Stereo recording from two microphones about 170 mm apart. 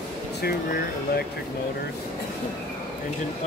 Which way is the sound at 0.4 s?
70° left (ahead or behind).